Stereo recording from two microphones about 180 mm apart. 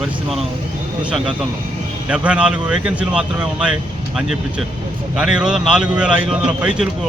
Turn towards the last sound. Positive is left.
turn(degrees=-5)  # may be behind; listen again after turning